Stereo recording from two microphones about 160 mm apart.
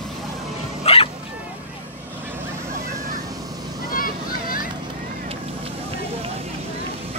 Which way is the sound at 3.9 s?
65° left (ahead or behind).